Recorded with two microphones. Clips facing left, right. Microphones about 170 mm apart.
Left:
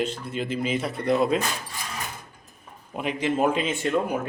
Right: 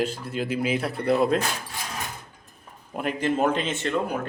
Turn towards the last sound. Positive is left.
turn(degrees=15)  # may be behind; listen again after turning